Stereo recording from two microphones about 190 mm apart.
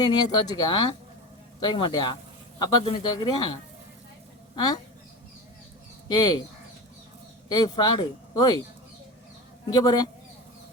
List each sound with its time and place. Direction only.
0.0 s speech: 25° left (ahead or behind)
4.5 s speech: 20° left (ahead or behind)
6.1 s speech: 20° left (ahead or behind)
7.4 s speech: 20° left (ahead or behind)
9.7 s speech: 20° left (ahead or behind)